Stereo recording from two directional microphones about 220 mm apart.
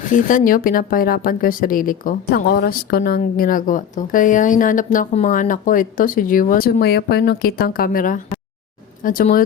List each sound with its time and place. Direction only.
0.0 s speech: 35° left (ahead or behind)